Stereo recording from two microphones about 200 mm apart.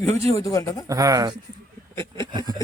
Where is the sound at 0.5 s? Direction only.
15° left (ahead or behind).